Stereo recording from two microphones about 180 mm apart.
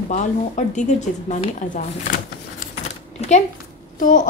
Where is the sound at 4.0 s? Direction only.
45° left (ahead or behind).